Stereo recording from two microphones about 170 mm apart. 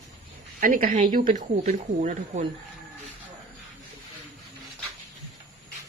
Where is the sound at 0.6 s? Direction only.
55° right (ahead or behind).